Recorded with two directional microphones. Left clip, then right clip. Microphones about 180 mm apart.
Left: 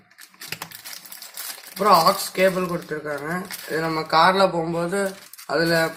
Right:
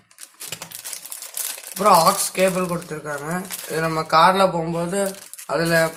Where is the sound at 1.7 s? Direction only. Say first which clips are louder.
Right 1 dB; 30° right (ahead or behind).